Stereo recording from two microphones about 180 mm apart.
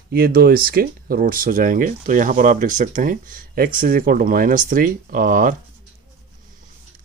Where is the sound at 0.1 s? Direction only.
55° right (ahead or behind).